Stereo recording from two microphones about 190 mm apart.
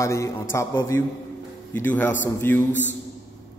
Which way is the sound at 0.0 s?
15° left (ahead or behind).